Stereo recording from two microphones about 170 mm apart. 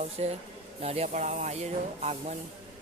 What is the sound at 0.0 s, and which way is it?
Speech, 40° right (ahead or behind).